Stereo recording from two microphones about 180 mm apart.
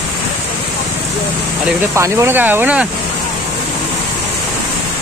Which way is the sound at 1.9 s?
15° right (ahead or behind).